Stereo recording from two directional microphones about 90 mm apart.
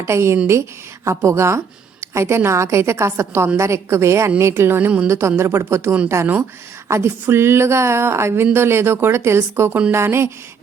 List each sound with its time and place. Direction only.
0.0 s a woman's voice: 30° right (ahead or behind)